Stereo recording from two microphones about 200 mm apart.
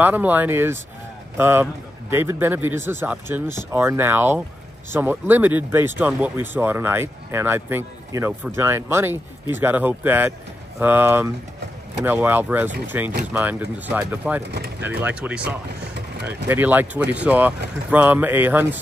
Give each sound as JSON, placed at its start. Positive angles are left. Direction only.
{"t": 0.0, "sound": "speech", "side_deg": -10}
{"t": 15.9, "sound": "vehicle", "side_deg": -55}
{"t": 16.4, "sound": "speech", "side_deg": -10}